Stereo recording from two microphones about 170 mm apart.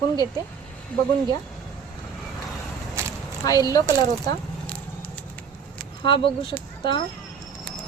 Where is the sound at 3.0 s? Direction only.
15° right (ahead or behind).